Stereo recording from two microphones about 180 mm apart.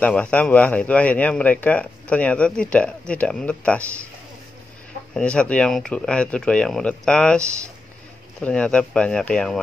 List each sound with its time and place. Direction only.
0.0 s speech: 5° left (ahead or behind)
5.1 s speech: 5° left (ahead or behind)